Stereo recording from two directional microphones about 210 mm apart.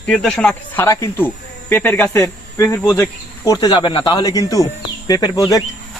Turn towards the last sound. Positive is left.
turn(degrees=20)  # may be behind; listen again after turning